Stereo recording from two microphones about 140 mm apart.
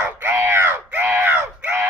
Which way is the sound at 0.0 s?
15° right (ahead or behind).